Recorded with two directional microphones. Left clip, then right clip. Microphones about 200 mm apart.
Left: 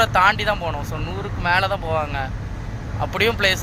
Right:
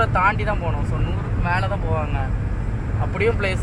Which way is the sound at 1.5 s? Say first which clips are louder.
Left 5 dB; 20° left (ahead or behind).